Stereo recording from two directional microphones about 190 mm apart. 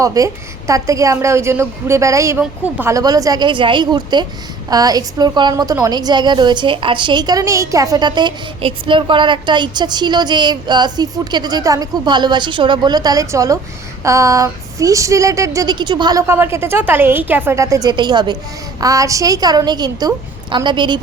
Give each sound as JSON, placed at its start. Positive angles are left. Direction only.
{"t": 0.0, "sound": "a woman's voice", "side_deg": -15}